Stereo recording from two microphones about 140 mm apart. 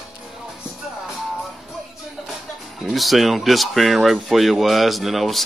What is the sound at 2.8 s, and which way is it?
Speech, centre (ahead or behind).